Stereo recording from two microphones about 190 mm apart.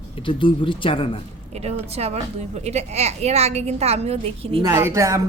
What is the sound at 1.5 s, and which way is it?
A woman's voice, 35° right (ahead or behind).